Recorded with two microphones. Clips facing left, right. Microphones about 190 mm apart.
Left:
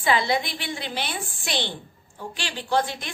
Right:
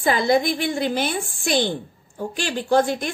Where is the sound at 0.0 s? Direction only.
45° right (ahead or behind).